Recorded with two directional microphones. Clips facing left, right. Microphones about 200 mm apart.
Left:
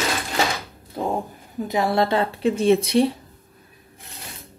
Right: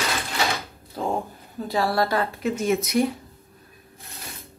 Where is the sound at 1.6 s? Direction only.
20° left (ahead or behind).